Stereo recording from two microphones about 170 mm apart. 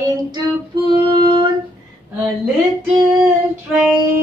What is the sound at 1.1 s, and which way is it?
Female singing, 30° right (ahead or behind).